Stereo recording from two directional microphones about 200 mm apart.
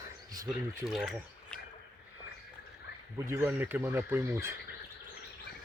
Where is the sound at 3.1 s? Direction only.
15° right (ahead or behind).